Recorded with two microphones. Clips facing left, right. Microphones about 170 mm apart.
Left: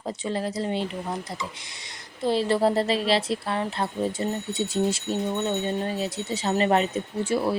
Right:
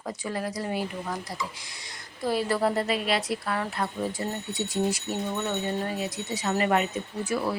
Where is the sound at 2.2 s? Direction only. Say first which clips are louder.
Left 3 dB; 25° left (ahead or behind).